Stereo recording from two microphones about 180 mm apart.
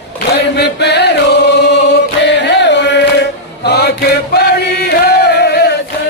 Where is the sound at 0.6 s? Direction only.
70° left (ahead or behind).